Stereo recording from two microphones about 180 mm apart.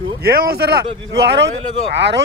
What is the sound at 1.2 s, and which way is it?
Speech, 75° right (ahead or behind).